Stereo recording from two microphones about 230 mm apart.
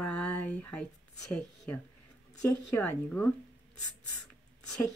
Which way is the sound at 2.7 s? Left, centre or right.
Centre.